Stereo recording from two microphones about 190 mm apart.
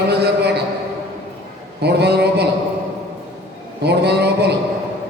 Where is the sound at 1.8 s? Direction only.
60° right (ahead or behind).